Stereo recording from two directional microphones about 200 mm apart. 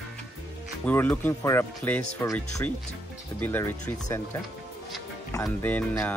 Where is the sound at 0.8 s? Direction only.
10° left (ahead or behind).